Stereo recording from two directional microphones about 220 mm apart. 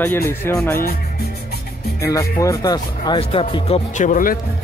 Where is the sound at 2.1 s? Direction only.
15° left (ahead or behind); by 4.3 s 35° left (ahead or behind).